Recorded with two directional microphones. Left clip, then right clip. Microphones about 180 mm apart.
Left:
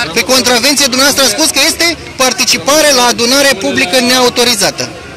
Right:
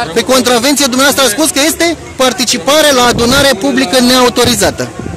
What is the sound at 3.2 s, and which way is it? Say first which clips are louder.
A man's voice: even; 45° right (ahead or behind).